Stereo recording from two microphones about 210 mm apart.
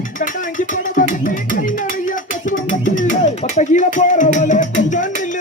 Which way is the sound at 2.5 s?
40° left (ahead or behind).